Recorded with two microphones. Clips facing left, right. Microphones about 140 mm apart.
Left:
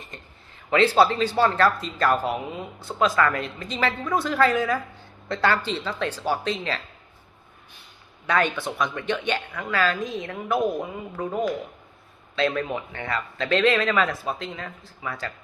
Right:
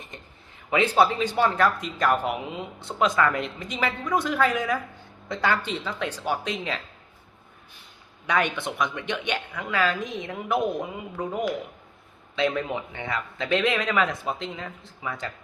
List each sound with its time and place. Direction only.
0.7 s speech: 15° right (ahead or behind)
8.3 s speech: 15° right (ahead or behind)
12.5 s speech: 15° right (ahead or behind)